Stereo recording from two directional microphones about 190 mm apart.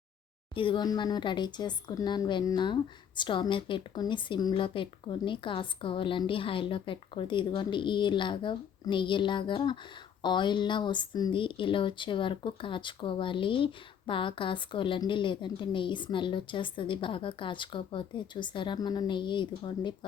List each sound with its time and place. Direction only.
0.5 s speech: 25° left (ahead or behind)